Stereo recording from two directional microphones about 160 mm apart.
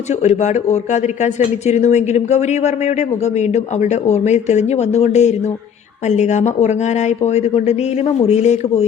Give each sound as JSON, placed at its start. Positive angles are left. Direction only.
{"t": 0.1, "sound": "speech", "side_deg": 45}